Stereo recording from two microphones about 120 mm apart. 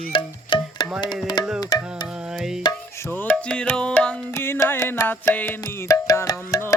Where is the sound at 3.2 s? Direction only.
5° left (ahead or behind).